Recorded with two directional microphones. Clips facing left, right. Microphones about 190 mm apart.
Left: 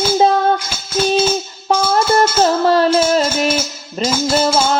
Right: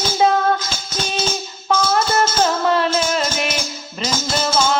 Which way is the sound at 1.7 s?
30° left (ahead or behind).